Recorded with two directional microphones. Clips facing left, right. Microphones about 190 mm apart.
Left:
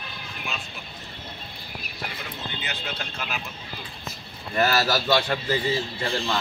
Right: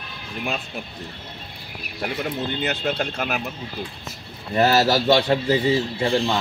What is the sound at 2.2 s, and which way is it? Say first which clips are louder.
Speech: right 10 dB; 55° right (ahead or behind).